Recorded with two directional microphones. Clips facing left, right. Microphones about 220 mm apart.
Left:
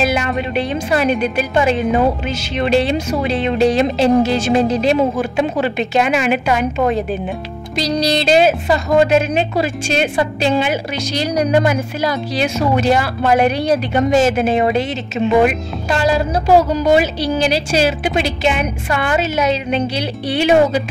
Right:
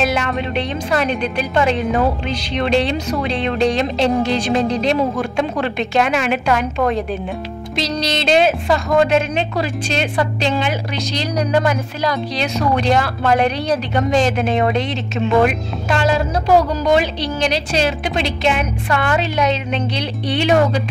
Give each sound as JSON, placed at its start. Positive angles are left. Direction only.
{"t": 0.0, "sound": "speech", "side_deg": 0}
{"t": 8.1, "sound": "speech", "side_deg": 0}